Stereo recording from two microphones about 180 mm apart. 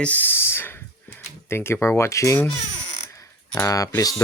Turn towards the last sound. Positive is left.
turn(degrees=20)  # may be behind; listen again after turning